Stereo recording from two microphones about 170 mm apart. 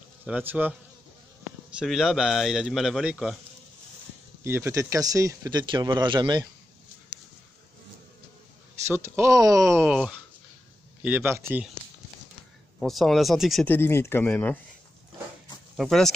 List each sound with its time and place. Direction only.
0.3 s speech: 10° right (ahead or behind)
1.8 s speech: 5° right (ahead or behind)
4.4 s speech: 15° right (ahead or behind)
8.8 s speech: 15° right (ahead or behind)
9.8 s speech: 5° right (ahead or behind)
12.7 s speech: centre (ahead or behind)
13.7 s speech: 15° left (ahead or behind)
15.7 s speech: centre (ahead or behind)